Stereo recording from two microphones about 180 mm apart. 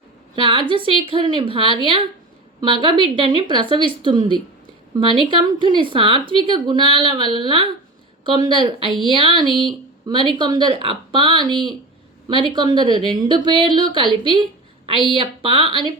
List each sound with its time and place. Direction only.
0.3 s a woman's voice: 25° right (ahead or behind)
9.5 s speech: centre (ahead or behind)
10.1 s a woman's voice: 25° right (ahead or behind)